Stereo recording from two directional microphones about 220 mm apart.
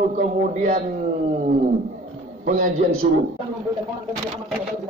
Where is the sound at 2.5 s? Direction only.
40° right (ahead or behind).